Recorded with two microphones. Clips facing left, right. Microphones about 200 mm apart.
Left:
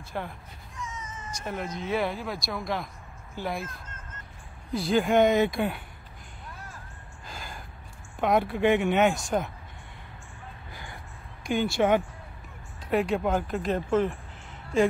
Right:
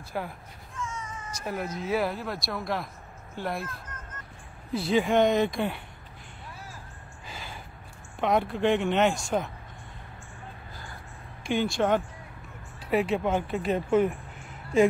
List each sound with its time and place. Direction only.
0.1 s speech: 5° right (ahead or behind)
0.7 s cat: 20° left (ahead or behind)
1.4 s speech: 5° right (ahead or behind)
4.7 s speech: centre (ahead or behind)
7.2 s a sound: centre (ahead or behind)
8.2 s speech: 5° left (ahead or behind)
11.4 s speech: centre (ahead or behind)